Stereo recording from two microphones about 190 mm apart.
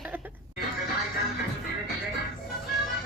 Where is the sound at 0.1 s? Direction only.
10° right (ahead or behind).